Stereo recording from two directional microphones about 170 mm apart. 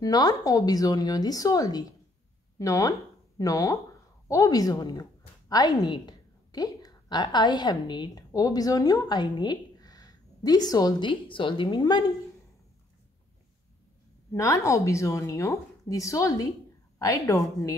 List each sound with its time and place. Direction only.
0.0 s a woman's voice: 20° left (ahead or behind)
14.3 s a woman's voice: 20° left (ahead or behind)